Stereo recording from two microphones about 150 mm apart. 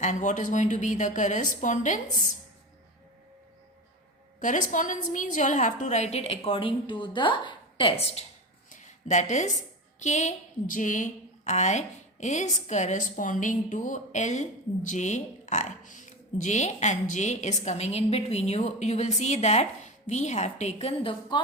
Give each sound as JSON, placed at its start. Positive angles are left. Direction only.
{"t": 0.0, "sound": "a woman's voice", "side_deg": 55}
{"t": 4.4, "sound": "a woman's voice", "side_deg": 60}
{"t": 8.7, "sound": "a sound", "side_deg": 55}
{"t": 10.0, "sound": "a woman's voice", "side_deg": 50}